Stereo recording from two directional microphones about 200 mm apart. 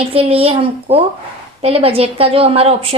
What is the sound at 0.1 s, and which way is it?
A woman's voice, 30° right (ahead or behind).